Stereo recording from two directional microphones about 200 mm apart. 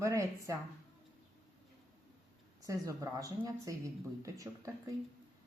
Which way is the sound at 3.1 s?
15° right (ahead or behind).